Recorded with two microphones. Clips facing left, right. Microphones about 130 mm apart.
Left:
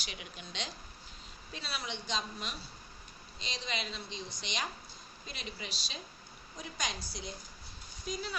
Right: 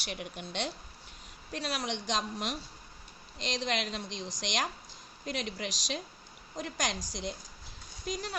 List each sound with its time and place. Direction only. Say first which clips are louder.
0.0 s a woman's voice: right 7 dB; 60° right (ahead or behind)
1.5 s a woman's voice: right 7 dB; 75° right (ahead or behind); by 4.7 s 90° right
5.2 s a woman's voice: right 9 dB; 75° right (ahead or behind)
6.6 s a woman's voice: right 5 dB; 85° right